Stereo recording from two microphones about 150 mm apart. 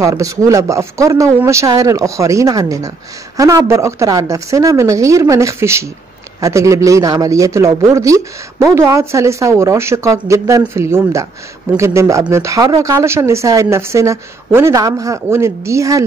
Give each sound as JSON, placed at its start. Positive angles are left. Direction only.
{"t": 0.0, "sound": "speech", "side_deg": -20}